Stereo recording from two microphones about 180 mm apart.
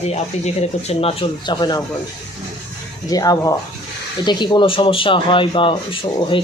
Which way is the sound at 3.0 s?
20° left (ahead or behind).